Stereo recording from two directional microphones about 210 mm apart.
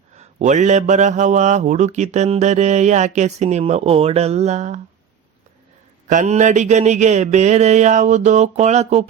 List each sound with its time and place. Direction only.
0.2 s a man's voice: 35° right (ahead or behind)
6.1 s a man's voice: 35° right (ahead or behind)